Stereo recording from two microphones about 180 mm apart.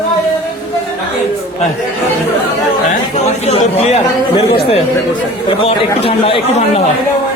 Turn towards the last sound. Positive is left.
turn(degrees=30)  # may be behind; listen again after turning